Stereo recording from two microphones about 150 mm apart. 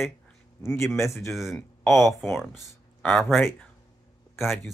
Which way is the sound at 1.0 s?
20° left (ahead or behind).